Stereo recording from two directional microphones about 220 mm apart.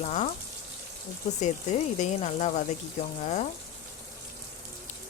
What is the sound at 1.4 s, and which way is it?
Speech, 30° left (ahead or behind).